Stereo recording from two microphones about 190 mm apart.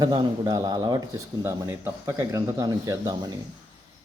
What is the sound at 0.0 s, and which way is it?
A man's voice, 20° right (ahead or behind).